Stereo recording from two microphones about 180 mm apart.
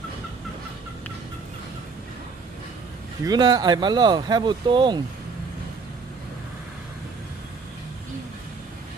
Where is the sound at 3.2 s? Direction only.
20° right (ahead or behind).